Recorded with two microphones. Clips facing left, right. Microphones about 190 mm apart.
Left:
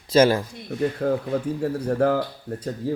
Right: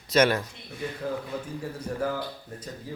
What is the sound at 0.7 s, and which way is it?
Speech, 60° left (ahead or behind).